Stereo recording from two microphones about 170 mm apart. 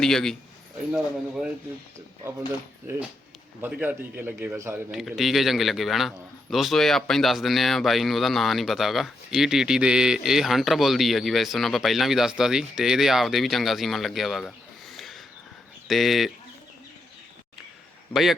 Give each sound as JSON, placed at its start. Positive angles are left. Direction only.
{"t": 0.0, "sound": "a man's voice", "side_deg": 5}
{"t": 3.6, "sound": "a man's voice", "side_deg": -10}
{"t": 4.9, "sound": "a man's voice", "side_deg": 0}
{"t": 18.1, "sound": "a man's voice", "side_deg": 0}